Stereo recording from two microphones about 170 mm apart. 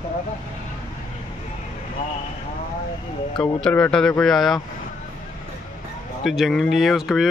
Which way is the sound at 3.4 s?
5° left (ahead or behind).